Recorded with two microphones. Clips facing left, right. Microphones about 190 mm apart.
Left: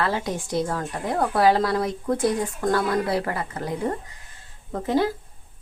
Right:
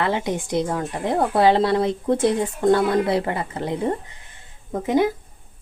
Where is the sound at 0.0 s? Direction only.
20° right (ahead or behind).